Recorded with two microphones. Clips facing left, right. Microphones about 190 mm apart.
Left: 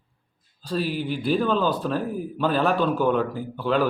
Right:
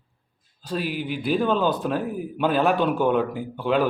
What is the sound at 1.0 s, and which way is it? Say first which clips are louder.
Speech: right 1 dB; 40° left (ahead or behind).